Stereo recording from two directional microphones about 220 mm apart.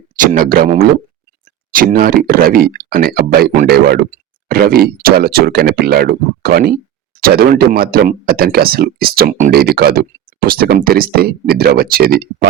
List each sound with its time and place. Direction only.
0.2 s speech: 40° right (ahead or behind)